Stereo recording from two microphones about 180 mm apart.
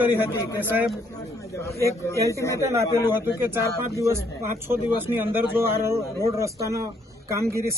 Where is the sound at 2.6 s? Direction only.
15° right (ahead or behind).